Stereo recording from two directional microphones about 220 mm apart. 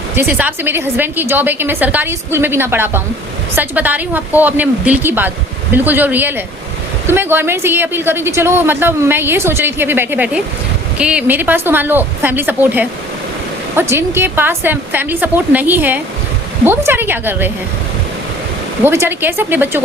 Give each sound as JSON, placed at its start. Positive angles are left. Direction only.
{"t": 0.2, "sound": "a woman's voice", "side_deg": -10}
{"t": 13.9, "sound": "a woman's voice", "side_deg": -10}
{"t": 18.8, "sound": "a woman's voice", "side_deg": -10}